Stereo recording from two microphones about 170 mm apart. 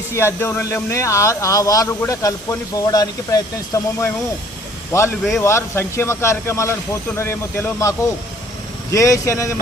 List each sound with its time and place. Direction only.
0.1 s speech: 15° left (ahead or behind)